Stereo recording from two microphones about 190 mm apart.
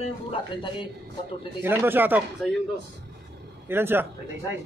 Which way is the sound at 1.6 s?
10° right (ahead or behind).